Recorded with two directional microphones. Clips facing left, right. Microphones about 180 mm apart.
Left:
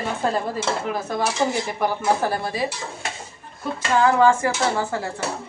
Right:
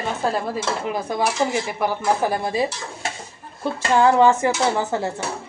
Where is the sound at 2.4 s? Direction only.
25° right (ahead or behind).